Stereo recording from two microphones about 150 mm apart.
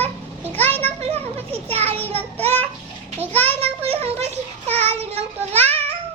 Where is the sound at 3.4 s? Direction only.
40° right (ahead or behind).